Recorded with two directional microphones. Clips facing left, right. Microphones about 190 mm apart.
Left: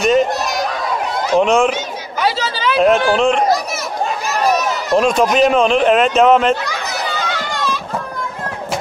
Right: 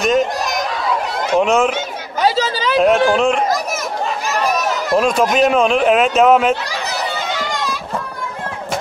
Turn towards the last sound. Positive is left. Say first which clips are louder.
# even
turn(degrees=-20)  # may be behind; listen again after turning